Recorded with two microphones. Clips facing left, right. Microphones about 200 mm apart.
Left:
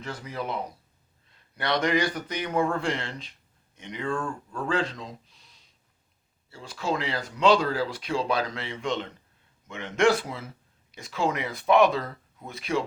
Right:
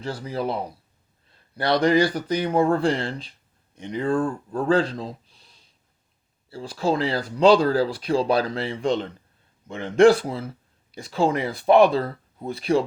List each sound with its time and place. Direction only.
0.0 s speech: 30° right (ahead or behind)